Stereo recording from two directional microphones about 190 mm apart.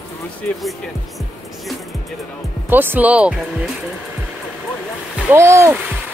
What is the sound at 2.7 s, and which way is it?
Speech, 10° right (ahead or behind).